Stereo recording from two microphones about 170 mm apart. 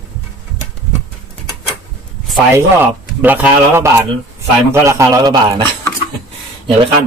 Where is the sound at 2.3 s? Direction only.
15° right (ahead or behind).